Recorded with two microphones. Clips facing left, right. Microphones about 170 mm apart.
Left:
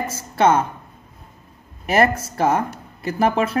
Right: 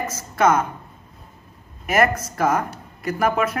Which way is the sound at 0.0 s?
30° left (ahead or behind).